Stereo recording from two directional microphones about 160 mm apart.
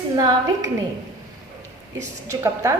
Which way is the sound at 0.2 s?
25° right (ahead or behind).